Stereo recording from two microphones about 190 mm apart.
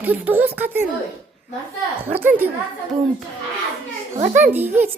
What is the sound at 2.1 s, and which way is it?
Speech, 10° right (ahead or behind).